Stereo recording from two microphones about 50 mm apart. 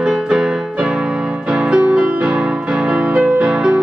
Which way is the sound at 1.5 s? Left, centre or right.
Centre.